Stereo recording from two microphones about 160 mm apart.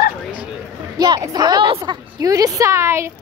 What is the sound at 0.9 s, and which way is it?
A woman's voice, 25° right (ahead or behind).